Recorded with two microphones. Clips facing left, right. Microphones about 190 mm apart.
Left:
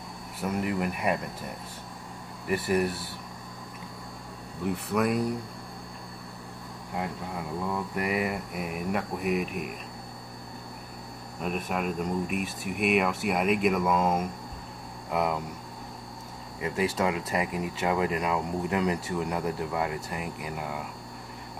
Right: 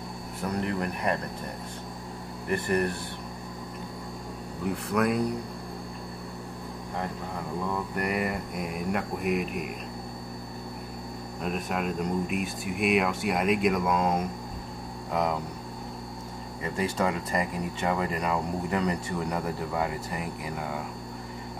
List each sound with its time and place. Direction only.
0.4 s speech: 5° left (ahead or behind)
2.4 s speech: 5° left (ahead or behind)
4.6 s speech: centre (ahead or behind)
7.6 s speech: 5° left (ahead or behind)
11.4 s speech: 5° left (ahead or behind)
16.6 s speech: 5° left (ahead or behind)